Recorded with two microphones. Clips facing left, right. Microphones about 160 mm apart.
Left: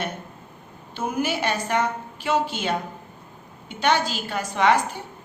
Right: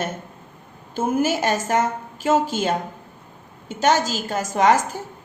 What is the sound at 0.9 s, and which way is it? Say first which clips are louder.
A woman's voice: right 5 dB; 45° right (ahead or behind).